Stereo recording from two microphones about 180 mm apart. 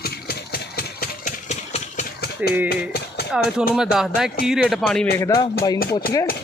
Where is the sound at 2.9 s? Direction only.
60° left (ahead or behind).